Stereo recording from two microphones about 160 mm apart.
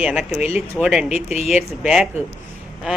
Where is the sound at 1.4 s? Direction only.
5° right (ahead or behind).